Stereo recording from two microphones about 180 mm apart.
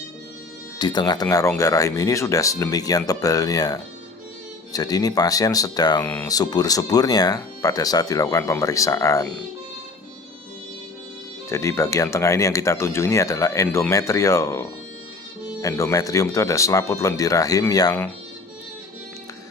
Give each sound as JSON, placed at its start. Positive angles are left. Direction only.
{"t": 0.8, "sound": "speech", "side_deg": 25}
{"t": 6.0, "sound": "speech", "side_deg": 10}
{"t": 6.2, "sound": "speech", "side_deg": 20}
{"t": 11.4, "sound": "speech", "side_deg": 15}
{"t": 13.7, "sound": "speech", "side_deg": 5}
{"t": 13.9, "sound": "speech", "side_deg": 15}